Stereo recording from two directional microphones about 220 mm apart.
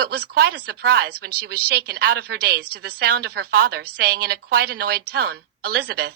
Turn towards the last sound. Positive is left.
turn(degrees=-45)  # may be behind; listen again after turning